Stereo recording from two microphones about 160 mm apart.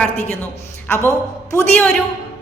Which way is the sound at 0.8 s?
15° left (ahead or behind).